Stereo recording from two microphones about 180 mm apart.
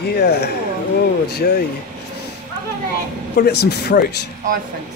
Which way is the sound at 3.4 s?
65° left (ahead or behind).